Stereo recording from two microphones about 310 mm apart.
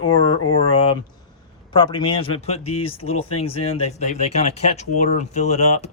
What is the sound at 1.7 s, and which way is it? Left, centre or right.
Speech, centre.